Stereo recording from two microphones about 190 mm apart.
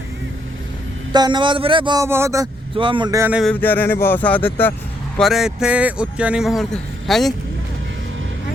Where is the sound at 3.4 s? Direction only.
10° left (ahead or behind).